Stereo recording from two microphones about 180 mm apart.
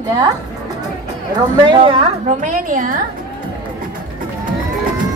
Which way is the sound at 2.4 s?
45° right (ahead or behind).